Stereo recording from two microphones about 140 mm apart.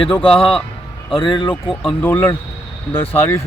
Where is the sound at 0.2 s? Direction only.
40° left (ahead or behind).